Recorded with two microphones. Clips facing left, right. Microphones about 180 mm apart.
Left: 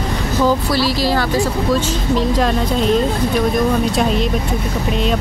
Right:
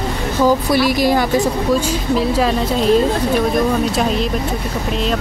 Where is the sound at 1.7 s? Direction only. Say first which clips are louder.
Right 1 dB; 5° right (ahead or behind).